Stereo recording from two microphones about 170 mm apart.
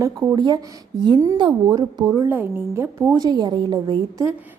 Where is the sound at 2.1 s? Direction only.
15° right (ahead or behind).